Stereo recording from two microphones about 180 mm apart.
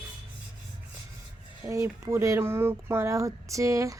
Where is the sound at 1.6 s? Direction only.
15° right (ahead or behind).